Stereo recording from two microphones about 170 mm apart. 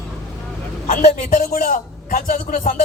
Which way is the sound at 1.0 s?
45° left (ahead or behind).